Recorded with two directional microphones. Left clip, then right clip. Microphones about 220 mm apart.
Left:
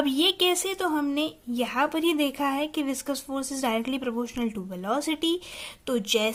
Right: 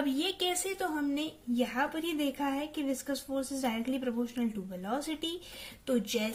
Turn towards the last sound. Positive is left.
turn(degrees=30)  # may be behind; listen again after turning